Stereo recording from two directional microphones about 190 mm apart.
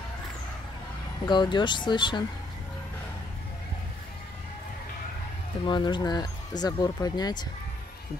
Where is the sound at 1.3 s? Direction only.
25° left (ahead or behind).